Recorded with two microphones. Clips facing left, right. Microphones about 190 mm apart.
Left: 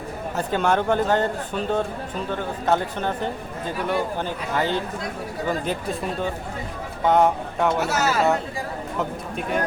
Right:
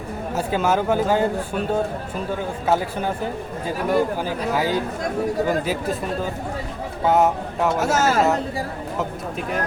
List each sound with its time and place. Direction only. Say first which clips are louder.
0.3 s speech: right 1 dB; 5° right (ahead or behind)
4.2 s speech: right 2 dB; 5° right (ahead or behind)
7.0 s speech: even; 5° right (ahead or behind)
7.8 s speech: right 3 dB; 45° right (ahead or behind)